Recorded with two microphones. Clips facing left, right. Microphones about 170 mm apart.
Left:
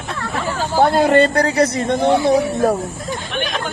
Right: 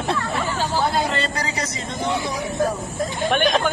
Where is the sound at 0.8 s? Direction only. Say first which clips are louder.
Left 13 dB; 60° left (ahead or behind).